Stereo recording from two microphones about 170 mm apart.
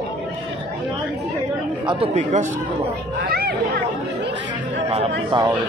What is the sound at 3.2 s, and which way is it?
Chatter, 65° right (ahead or behind).